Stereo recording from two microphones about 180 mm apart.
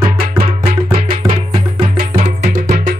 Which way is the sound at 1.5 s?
35° right (ahead or behind).